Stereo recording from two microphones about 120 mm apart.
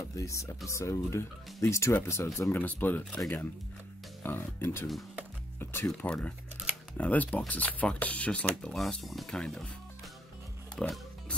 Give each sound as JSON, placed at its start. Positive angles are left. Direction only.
{"t": 0.2, "sound": "speech", "side_deg": 25}
{"t": 4.2, "sound": "speech", "side_deg": 20}
{"t": 10.8, "sound": "music", "side_deg": 10}